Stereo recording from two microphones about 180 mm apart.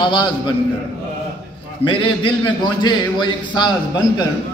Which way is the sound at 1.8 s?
30° left (ahead or behind).